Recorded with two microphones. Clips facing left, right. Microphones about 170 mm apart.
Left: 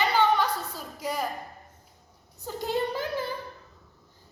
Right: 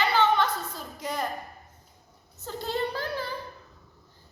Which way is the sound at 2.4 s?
15° left (ahead or behind).